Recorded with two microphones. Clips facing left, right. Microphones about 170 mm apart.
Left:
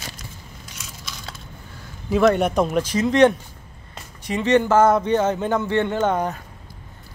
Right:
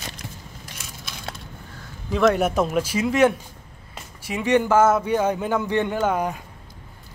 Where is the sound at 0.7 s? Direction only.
55° right (ahead or behind).